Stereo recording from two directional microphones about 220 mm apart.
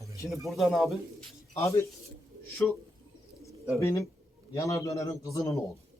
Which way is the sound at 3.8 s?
15° left (ahead or behind).